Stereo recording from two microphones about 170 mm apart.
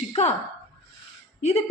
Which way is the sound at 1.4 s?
40° left (ahead or behind).